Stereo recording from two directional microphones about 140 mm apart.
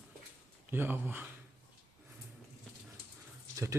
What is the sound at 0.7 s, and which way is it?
Speech, 15° right (ahead or behind).